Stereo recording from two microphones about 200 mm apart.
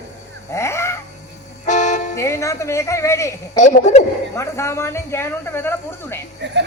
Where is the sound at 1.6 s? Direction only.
35° left (ahead or behind).